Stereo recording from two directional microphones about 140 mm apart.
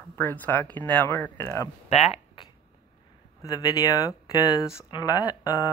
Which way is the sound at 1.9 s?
50° left (ahead or behind).